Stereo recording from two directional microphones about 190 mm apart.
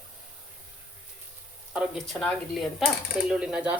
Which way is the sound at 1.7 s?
Centre (ahead or behind).